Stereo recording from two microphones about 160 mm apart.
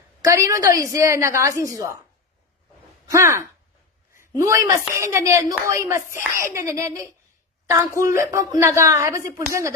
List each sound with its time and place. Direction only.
0.2 s a woman's voice: 20° right (ahead or behind)
3.1 s a woman's voice: 15° right (ahead or behind)